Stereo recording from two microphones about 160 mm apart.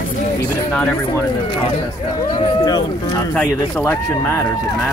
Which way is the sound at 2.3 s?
25° left (ahead or behind).